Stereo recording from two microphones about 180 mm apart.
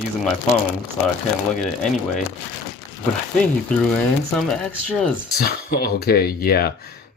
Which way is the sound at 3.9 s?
5° left (ahead or behind).